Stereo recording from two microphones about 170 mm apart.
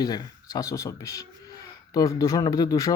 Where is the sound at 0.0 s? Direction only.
25° left (ahead or behind).